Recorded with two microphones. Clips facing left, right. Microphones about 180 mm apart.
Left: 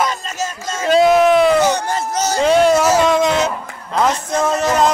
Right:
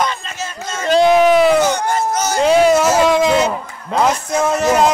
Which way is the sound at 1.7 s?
35° left (ahead or behind).